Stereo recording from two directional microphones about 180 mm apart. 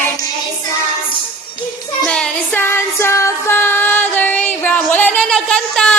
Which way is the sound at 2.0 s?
5° left (ahead or behind).